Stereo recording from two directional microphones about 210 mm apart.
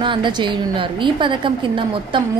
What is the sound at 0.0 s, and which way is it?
A woman's voice, 20° right (ahead or behind).